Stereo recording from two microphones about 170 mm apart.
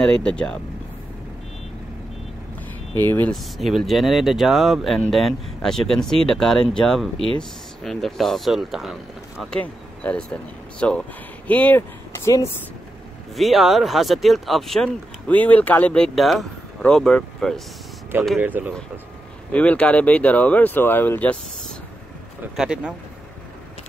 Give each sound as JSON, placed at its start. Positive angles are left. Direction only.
{"t": 0.0, "sound": "speech", "side_deg": 5}
{"t": 2.9, "sound": "speech", "side_deg": 10}
{"t": 3.5, "sound": "speech", "side_deg": 0}
{"t": 13.4, "sound": "speech", "side_deg": 0}
{"t": 18.4, "sound": "speech", "side_deg": -10}
{"t": 19.5, "sound": "speech", "side_deg": 10}
{"t": 22.6, "sound": "speech", "side_deg": -5}